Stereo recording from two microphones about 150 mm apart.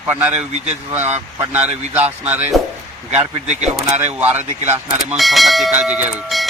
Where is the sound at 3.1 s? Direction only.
50° right (ahead or behind).